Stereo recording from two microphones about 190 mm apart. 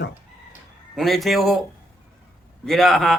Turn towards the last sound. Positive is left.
turn(degrees=0)  # may be behind; listen again after turning